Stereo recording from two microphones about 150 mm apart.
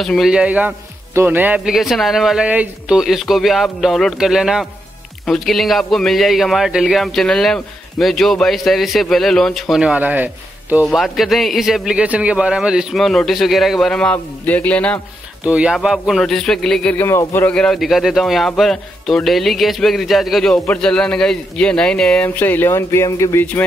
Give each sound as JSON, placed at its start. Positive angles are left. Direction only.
{"t": 0.0, "sound": "a man's voice", "side_deg": 0}
{"t": 10.9, "sound": "a man's voice", "side_deg": 0}
{"t": 15.4, "sound": "a man's voice", "side_deg": -10}